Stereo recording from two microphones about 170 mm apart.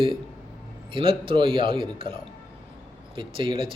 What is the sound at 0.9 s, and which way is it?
A man's voice, 30° right (ahead or behind).